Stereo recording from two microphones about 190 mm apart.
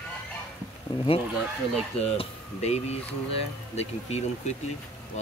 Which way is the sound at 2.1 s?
35° left (ahead or behind).